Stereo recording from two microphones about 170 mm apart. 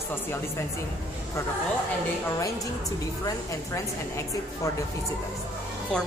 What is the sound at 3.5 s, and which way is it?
Speech, 20° left (ahead or behind).